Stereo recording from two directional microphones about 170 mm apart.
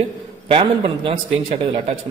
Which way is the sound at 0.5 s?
35° right (ahead or behind).